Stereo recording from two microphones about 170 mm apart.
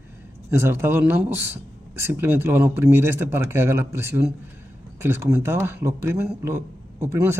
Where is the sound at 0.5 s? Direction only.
15° right (ahead or behind).